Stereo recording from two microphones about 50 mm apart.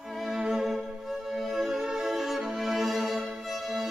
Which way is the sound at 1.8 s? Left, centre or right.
Centre.